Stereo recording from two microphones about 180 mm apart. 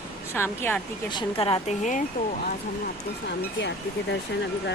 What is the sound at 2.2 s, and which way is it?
Speech, 50° left (ahead or behind).